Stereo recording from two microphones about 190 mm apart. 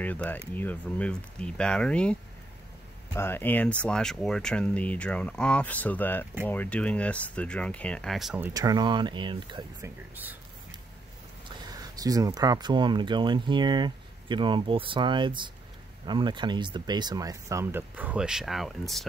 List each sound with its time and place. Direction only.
0.0 s speech: 10° left (ahead or behind)
3.2 s speech: 10° left (ahead or behind)
8.5 s speech: 20° right (ahead or behind)
11.4 s speech: 20° right (ahead or behind); by 19.0 s centre (ahead or behind)